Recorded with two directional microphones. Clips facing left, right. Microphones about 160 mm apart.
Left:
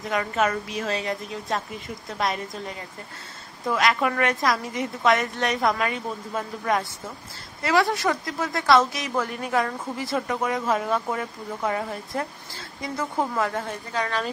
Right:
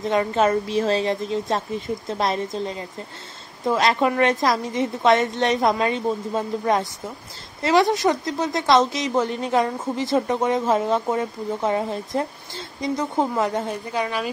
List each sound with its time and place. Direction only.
0.0 s a woman's voice: 30° right (ahead or behind); by 14.3 s 10° right (ahead or behind)